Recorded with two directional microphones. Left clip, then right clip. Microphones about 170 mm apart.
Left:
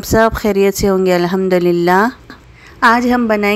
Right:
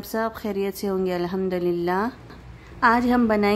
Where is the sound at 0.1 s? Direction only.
40° left (ahead or behind).